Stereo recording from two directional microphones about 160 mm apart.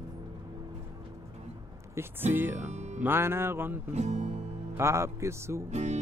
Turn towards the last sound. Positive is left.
turn(degrees=-45)  # may be behind; listen again after turning